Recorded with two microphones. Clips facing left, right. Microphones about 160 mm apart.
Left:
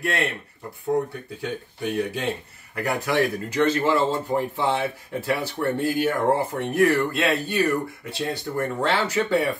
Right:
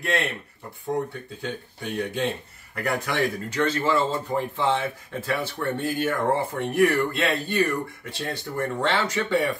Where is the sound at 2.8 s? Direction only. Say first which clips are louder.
Left 2 dB; 10° left (ahead or behind).